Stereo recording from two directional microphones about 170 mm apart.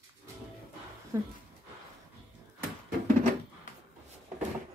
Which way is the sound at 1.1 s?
20° right (ahead or behind).